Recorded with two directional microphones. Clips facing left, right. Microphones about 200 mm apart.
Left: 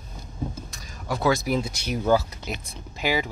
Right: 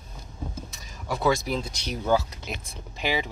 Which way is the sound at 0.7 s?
Centre (ahead or behind).